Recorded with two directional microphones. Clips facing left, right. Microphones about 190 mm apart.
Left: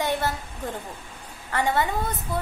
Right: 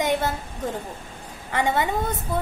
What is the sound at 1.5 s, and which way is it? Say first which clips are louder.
Speech: right 1 dB; 20° right (ahead or behind).